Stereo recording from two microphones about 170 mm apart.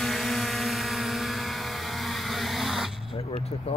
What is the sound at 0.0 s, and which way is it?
Vehicle, centre (ahead or behind).